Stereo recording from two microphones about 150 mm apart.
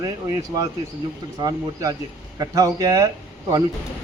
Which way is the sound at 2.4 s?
25° right (ahead or behind).